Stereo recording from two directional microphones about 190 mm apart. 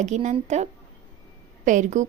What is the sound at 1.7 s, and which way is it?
Speech, 40° right (ahead or behind).